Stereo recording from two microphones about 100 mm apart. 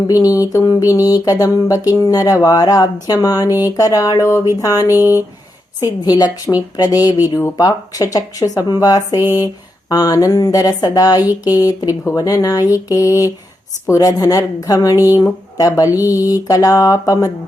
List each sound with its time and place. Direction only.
0.1 s speech: 35° left (ahead or behind)
4.9 s speech: 25° right (ahead or behind)
5.8 s speech: 40° left (ahead or behind)